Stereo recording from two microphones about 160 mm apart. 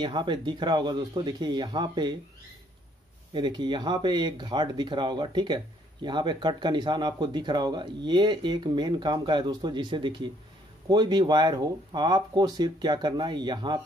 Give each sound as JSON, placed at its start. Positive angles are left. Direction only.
{"t": 0.0, "sound": "speech", "side_deg": -30}
{"t": 3.3, "sound": "speech", "side_deg": -30}